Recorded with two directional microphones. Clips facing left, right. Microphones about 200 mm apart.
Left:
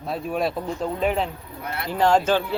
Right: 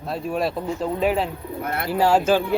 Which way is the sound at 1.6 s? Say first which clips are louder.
Right 3 dB; 55° right (ahead or behind).